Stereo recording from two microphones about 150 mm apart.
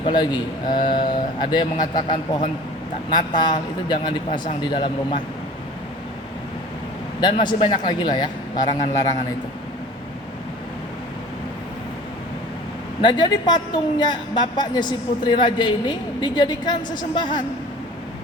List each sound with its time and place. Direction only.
0.0 s a woman's voice: 30° left (ahead or behind)
7.2 s speech: 30° left (ahead or behind)
13.0 s a woman's voice: 30° left (ahead or behind)